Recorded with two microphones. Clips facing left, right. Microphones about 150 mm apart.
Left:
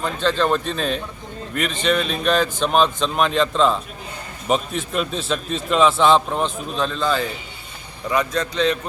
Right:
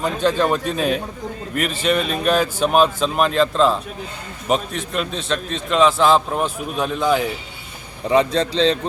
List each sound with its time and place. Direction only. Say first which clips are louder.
0.0 s a man's voice: right 2 dB; 15° right (ahead or behind)
8.1 s a man's voice: right 5 dB; 30° right (ahead or behind)